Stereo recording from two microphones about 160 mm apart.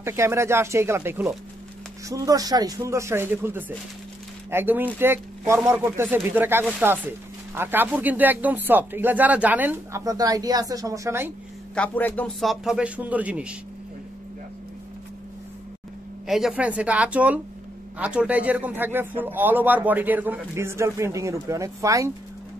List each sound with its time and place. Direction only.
0.0 s speech: 15° right (ahead or behind)
10.0 s speech: 20° right (ahead or behind)
11.7 s speech: 10° left (ahead or behind); by 13.6 s 5° right (ahead or behind)
16.3 s speech: 5° right (ahead or behind); by 22.1 s 20° right (ahead or behind)